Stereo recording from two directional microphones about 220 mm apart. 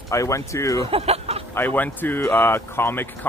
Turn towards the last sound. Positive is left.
turn(degrees=10)  # may be behind; listen again after turning